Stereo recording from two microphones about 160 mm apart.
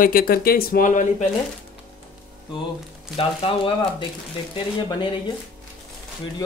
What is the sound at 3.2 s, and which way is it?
Speech, 35° left (ahead or behind).